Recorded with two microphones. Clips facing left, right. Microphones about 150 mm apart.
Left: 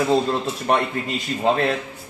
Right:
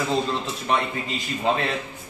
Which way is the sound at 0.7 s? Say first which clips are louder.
Left 3 dB; 55° left (ahead or behind).